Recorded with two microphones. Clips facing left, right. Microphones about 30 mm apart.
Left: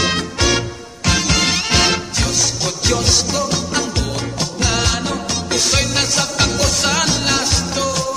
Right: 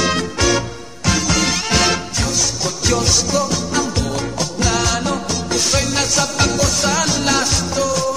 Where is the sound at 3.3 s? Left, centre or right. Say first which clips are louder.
Right 1 dB; left; by 6.5 s centre.